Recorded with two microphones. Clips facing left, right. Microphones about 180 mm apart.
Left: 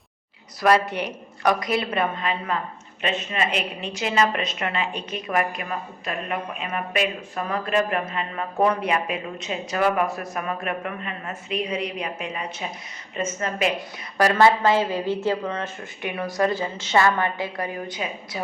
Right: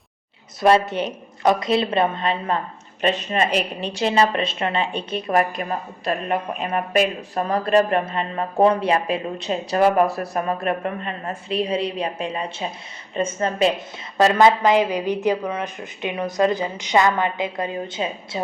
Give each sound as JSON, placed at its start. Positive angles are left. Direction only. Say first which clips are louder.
{"t": 0.6, "sound": "a woman's voice", "louder": "right 3 dB", "side_deg": -25}